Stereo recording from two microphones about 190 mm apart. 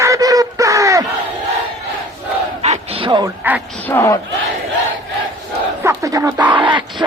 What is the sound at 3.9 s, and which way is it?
Speech, 15° left (ahead or behind).